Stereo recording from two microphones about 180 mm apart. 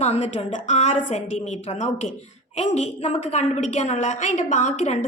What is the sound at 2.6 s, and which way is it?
A woman's voice, 35° left (ahead or behind).